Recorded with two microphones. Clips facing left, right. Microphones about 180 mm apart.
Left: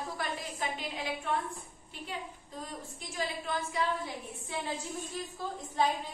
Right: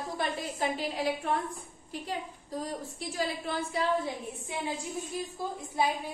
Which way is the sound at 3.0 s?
35° right (ahead or behind).